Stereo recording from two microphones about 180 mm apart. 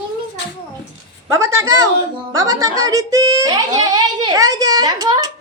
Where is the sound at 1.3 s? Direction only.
15° right (ahead or behind).